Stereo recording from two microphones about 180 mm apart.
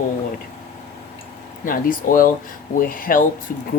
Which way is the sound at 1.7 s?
50° left (ahead or behind).